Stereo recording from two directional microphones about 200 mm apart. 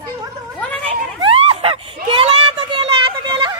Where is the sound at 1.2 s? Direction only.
30° right (ahead or behind).